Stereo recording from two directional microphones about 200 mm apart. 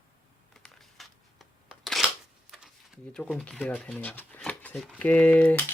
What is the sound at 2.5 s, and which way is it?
Speech, centre (ahead or behind).